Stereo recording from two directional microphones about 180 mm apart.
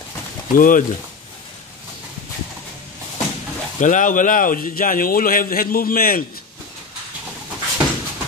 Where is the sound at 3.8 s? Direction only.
45° left (ahead or behind).